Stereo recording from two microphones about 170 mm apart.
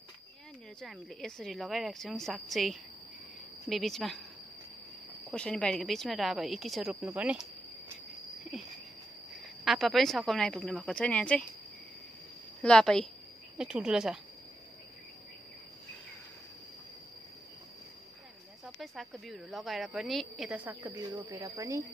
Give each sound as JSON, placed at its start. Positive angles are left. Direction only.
{"t": 0.7, "sound": "speech", "side_deg": 0}
{"t": 5.3, "sound": "speech", "side_deg": 5}
{"t": 8.3, "sound": "cricket", "side_deg": 0}
{"t": 9.7, "sound": "speech", "side_deg": 0}
{"t": 12.6, "sound": "speech", "side_deg": 5}
{"t": 18.8, "sound": "speech", "side_deg": 0}
{"t": 20.9, "sound": "speech", "side_deg": -25}